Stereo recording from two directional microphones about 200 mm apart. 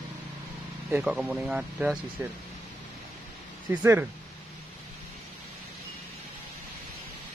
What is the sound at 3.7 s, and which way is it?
Speech, 10° right (ahead or behind).